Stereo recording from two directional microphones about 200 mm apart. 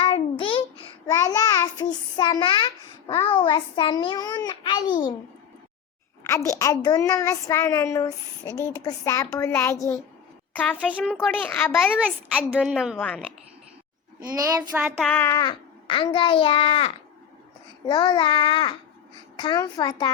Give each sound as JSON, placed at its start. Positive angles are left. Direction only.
{"t": 0.0, "sound": "a sound", "side_deg": 25}
{"t": 1.0, "sound": "child singing", "side_deg": 15}
{"t": 3.3, "sound": "a child's voice", "side_deg": 25}
{"t": 6.2, "sound": "a child's voice", "side_deg": 15}
{"t": 11.3, "sound": "a child's voice", "side_deg": 10}
{"t": 12.0, "sound": "a woman's voice", "side_deg": -5}
{"t": 14.3, "sound": "a child's voice", "side_deg": -15}
{"t": 14.9, "sound": "a woman's voice", "side_deg": 5}
{"t": 15.2, "sound": "a child's voice", "side_deg": 15}